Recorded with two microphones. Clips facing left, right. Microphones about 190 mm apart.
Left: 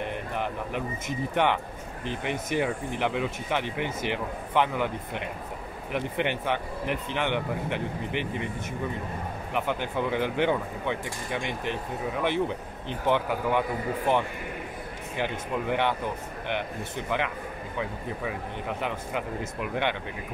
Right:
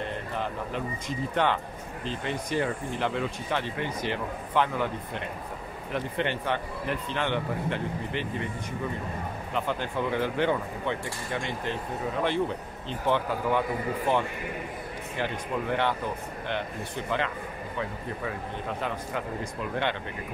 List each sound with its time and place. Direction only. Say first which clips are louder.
0.0 s speech: left 1 dB; 15° left (ahead or behind)
17.1 s speech: left 1 dB; 15° left (ahead or behind)